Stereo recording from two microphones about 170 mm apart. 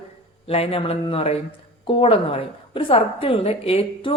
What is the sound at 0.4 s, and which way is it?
A woman's voice, 35° left (ahead or behind).